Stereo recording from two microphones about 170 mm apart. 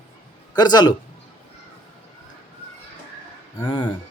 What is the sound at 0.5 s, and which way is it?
Speech, 25° left (ahead or behind).